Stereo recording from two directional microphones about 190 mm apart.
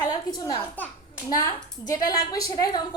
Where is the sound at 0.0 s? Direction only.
20° left (ahead or behind).